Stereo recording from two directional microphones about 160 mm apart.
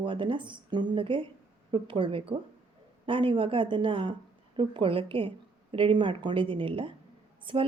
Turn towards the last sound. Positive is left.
turn(degrees=-30)  # may be behind; listen again after turning